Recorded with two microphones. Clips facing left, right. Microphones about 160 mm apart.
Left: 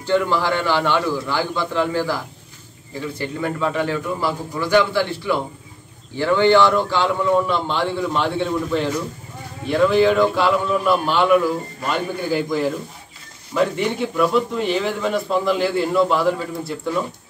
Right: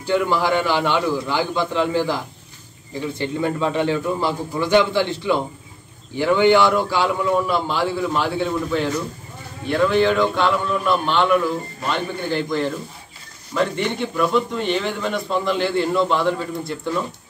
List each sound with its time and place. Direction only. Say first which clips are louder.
0.0 s a man's voice: even; 10° right (ahead or behind); by 17.0 s 5° left (ahead or behind)